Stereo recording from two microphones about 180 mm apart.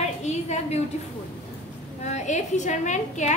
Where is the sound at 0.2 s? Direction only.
40° left (ahead or behind).